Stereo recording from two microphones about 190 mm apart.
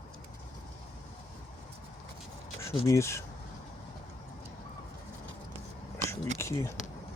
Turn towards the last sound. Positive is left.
turn(degrees=15)  # may be behind; listen again after turning